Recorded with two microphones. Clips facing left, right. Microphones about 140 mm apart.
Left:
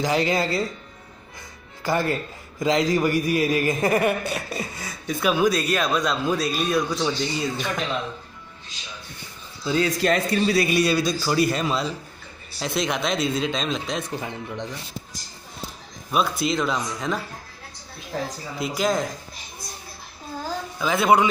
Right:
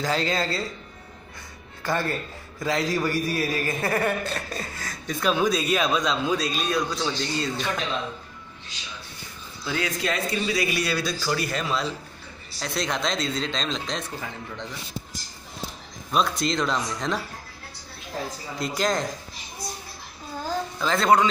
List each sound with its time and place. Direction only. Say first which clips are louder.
0.0 s a man's voice: left 3 dB; 15° left (ahead or behind)
1.9 s a man's voice: left 3 dB; 15° left (ahead or behind)
9.7 s a woman's voice: left 6 dB; 30° left (ahead or behind)
10.0 s speech: left 5 dB; 45° left (ahead or behind)
10.9 s a man's voice: left 4 dB; 20° left (ahead or behind)
14.1 s speech: left 4 dB; 20° left (ahead or behind)
16.1 s speech: left 1 dB; 5° left (ahead or behind)
18.6 s speech: left 2 dB; 5° left (ahead or behind)
20.8 s a man's voice: left 2 dB; 10° left (ahead or behind)